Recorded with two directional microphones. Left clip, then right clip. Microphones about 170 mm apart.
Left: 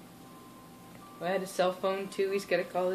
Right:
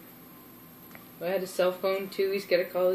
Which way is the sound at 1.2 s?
35° left (ahead or behind).